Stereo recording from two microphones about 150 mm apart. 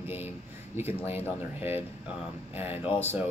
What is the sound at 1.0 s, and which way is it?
Speech, 15° right (ahead or behind).